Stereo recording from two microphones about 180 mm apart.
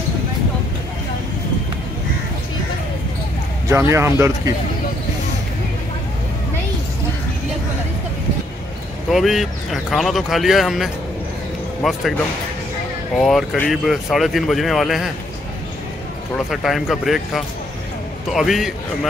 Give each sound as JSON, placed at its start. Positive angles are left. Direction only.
{"t": 3.6, "sound": "speech", "side_deg": -15}
{"t": 9.1, "sound": "speech", "side_deg": 0}
{"t": 13.2, "sound": "speech", "side_deg": 0}
{"t": 16.3, "sound": "speech", "side_deg": 0}